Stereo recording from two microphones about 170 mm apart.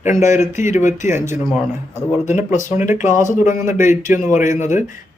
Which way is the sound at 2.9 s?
50° left (ahead or behind).